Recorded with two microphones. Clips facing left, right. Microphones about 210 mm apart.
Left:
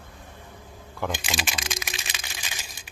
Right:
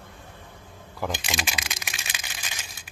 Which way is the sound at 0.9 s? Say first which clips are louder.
Even; centre (ahead or behind).